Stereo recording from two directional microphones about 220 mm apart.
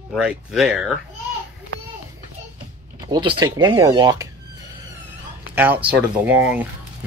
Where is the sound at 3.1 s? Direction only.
20° right (ahead or behind).